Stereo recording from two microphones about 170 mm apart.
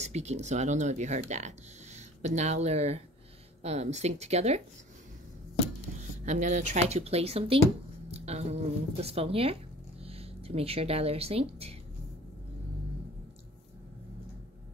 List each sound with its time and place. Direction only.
0.0 s speech: 40° right (ahead or behind)
5.9 s speech: 45° right (ahead or behind)